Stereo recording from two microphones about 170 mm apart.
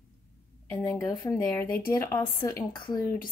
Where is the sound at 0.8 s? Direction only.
20° left (ahead or behind).